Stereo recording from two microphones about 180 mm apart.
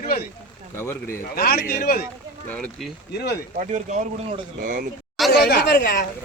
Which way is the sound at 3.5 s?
40° right (ahead or behind).